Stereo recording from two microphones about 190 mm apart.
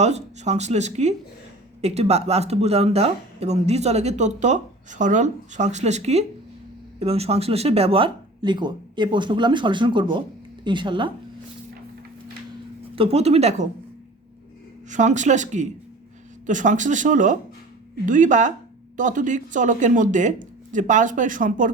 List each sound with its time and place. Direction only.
0.0 s speech: 35° right (ahead or behind)
13.0 s speech: 30° right (ahead or behind)
14.8 s speech: 40° right (ahead or behind)